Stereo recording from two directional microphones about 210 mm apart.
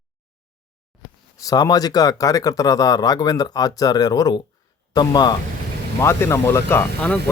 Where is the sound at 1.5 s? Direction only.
15° left (ahead or behind).